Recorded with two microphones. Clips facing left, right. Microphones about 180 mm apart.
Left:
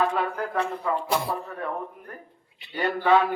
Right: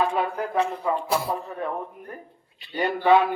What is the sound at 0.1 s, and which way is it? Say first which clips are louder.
Speech: right 2 dB; 15° right (ahead or behind).